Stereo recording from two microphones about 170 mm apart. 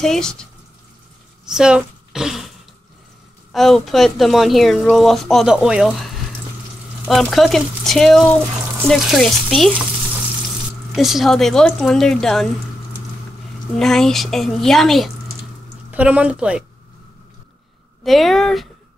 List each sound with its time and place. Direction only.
0.0 s speech: 5° left (ahead or behind)
3.5 s speech: centre (ahead or behind)
11.0 s speech: centre (ahead or behind)
13.7 s speech: 5° left (ahead or behind)
18.0 s speech: centre (ahead or behind)